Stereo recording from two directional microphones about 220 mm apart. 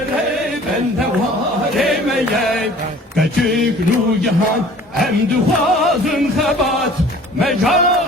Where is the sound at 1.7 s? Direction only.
Centre (ahead or behind).